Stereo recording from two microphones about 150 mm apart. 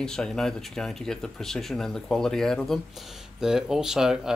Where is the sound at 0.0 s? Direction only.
5° left (ahead or behind).